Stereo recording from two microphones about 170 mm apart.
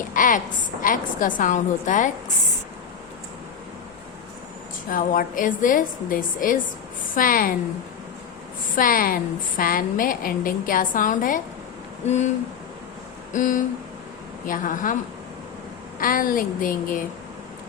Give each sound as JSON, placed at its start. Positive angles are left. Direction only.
{"t": 0.1, "sound": "a woman's voice", "side_deg": 50}
{"t": 4.9, "sound": "a woman's voice", "side_deg": 55}
{"t": 8.7, "sound": "a woman's voice", "side_deg": 55}
{"t": 13.3, "sound": "a woman's voice", "side_deg": 50}
{"t": 16.0, "sound": "a woman's voice", "side_deg": 55}